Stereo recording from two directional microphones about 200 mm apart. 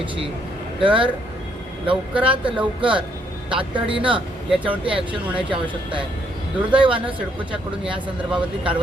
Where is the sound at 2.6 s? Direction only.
25° right (ahead or behind).